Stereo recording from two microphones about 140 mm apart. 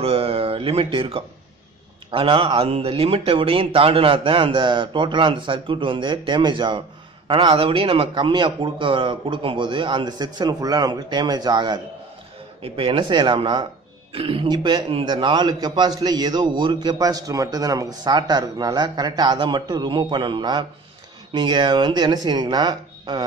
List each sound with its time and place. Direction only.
0.0 s a man's voice: 45° right (ahead or behind)